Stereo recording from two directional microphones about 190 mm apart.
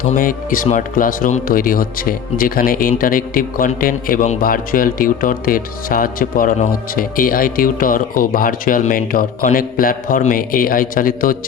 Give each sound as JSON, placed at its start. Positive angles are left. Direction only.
{"t": 0.1, "sound": "a man's voice", "side_deg": 45}